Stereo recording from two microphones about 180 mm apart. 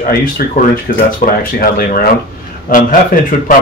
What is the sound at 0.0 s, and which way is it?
Speech, 50° left (ahead or behind).